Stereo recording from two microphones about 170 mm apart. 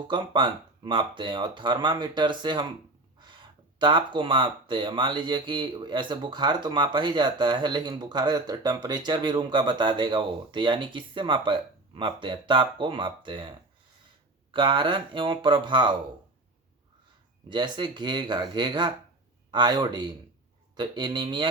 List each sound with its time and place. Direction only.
0.1 s speech: 30° right (ahead or behind)
14.5 s speech: 30° right (ahead or behind)
17.5 s speech: 25° right (ahead or behind)